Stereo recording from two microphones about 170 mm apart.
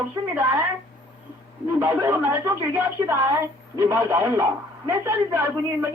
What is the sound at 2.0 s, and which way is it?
A woman's voice, 15° right (ahead or behind).